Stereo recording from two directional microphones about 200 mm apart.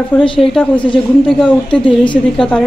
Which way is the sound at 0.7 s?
25° left (ahead or behind).